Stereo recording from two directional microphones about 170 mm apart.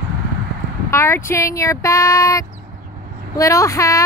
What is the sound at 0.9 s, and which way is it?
Speech, 15° left (ahead or behind).